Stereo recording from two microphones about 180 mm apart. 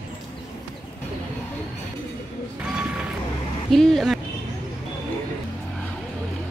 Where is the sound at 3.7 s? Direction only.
Centre (ahead or behind).